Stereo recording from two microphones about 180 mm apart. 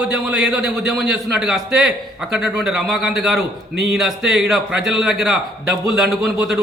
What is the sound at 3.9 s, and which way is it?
A man's voice, centre (ahead or behind).